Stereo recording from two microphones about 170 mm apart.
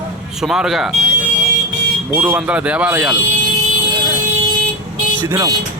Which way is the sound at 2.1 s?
10° right (ahead or behind).